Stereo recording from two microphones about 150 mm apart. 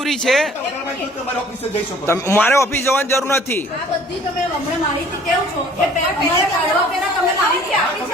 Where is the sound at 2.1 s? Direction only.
15° left (ahead or behind).